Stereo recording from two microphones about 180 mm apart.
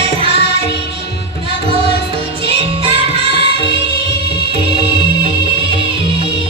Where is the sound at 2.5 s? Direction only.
30° right (ahead or behind).